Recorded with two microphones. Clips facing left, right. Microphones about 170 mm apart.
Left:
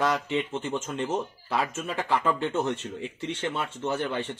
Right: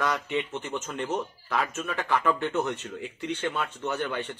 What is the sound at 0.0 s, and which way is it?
Speech, 25° left (ahead or behind).